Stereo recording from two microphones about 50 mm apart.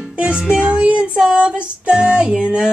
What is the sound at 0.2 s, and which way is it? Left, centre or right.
Music, right.